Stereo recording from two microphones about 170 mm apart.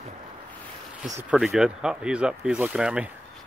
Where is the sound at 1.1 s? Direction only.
15° right (ahead or behind).